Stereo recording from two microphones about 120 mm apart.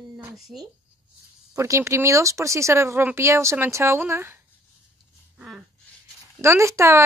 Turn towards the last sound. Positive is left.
turn(degrees=-25)  # may be behind; listen again after turning